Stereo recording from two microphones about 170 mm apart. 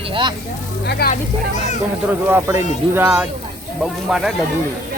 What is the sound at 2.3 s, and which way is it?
Speech, 15° right (ahead or behind).